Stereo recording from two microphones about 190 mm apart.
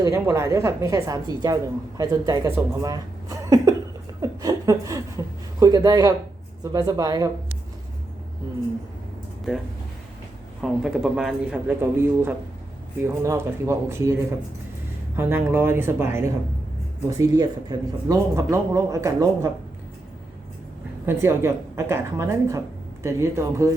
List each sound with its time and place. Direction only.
0.0 s a man's voice: 15° right (ahead or behind)
4.2 s chuckle: 20° right (ahead or behind)
6.7 s a woman's voice: 20° right (ahead or behind)
9.5 s a man's voice: centre (ahead or behind); by 19.5 s 15° right (ahead or behind)
21.1 s a man's voice: 15° right (ahead or behind)